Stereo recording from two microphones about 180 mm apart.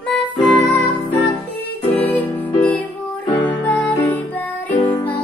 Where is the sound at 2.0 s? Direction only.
10° left (ahead or behind).